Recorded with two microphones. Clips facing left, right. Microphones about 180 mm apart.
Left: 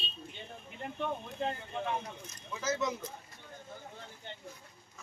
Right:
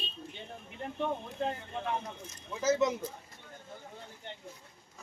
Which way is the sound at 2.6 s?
25° right (ahead or behind).